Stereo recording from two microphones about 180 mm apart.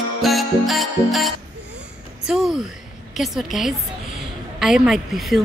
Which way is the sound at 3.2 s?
Centre (ahead or behind).